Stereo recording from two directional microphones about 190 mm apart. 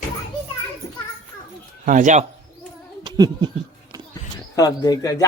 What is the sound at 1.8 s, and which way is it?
Speech, 40° right (ahead or behind).